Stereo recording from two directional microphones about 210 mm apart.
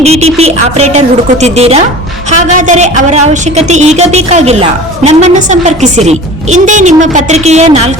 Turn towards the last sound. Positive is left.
turn(degrees=-30)  # may be behind; listen again after turning